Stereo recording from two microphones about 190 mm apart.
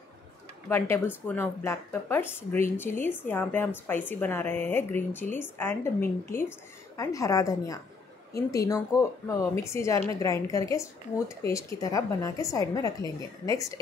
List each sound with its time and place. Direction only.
0.7 s speech: 10° left (ahead or behind)